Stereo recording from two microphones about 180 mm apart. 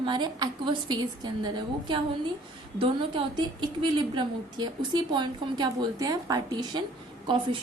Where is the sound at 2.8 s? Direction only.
30° right (ahead or behind).